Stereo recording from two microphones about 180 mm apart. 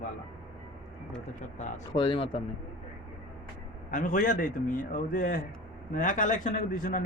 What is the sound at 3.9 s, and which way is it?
A man's voice, 45° left (ahead or behind).